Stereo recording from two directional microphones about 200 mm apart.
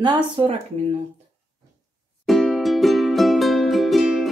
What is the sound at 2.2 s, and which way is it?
Music, centre (ahead or behind).